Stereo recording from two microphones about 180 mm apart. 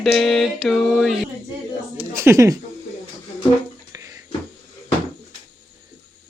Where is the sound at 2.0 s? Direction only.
15° right (ahead or behind).